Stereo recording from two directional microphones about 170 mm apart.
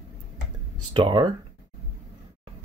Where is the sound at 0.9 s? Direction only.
30° right (ahead or behind).